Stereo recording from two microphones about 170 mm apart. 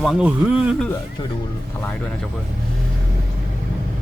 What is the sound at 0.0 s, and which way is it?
Speech, 5° right (ahead or behind).